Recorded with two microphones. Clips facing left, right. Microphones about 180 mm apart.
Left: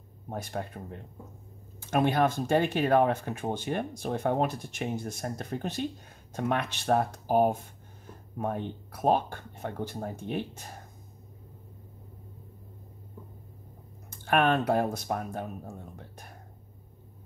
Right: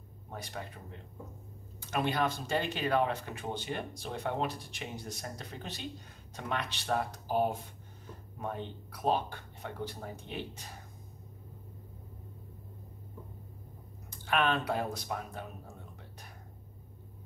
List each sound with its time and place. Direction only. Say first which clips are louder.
0.3 s speech: left 7 dB; 50° left (ahead or behind)
14.1 s speech: left 5 dB; 50° left (ahead or behind)